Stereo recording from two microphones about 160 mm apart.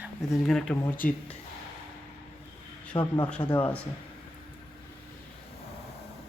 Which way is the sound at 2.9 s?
30° left (ahead or behind).